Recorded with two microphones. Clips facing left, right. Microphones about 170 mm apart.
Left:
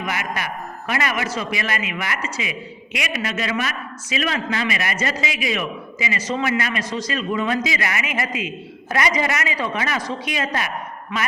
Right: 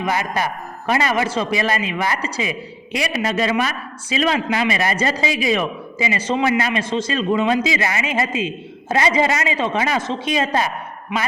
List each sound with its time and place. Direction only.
0.0 s speech: 30° right (ahead or behind)
4.4 s a man's voice: 15° right (ahead or behind)
4.7 s a man's voice: 30° right (ahead or behind)
11.1 s a man's voice: 15° right (ahead or behind)